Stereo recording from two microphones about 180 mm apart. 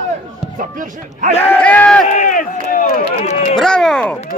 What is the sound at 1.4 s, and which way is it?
Speech, 10° left (ahead or behind).